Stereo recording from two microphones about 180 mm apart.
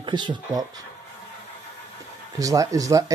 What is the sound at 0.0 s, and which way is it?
Speech, 25° right (ahead or behind).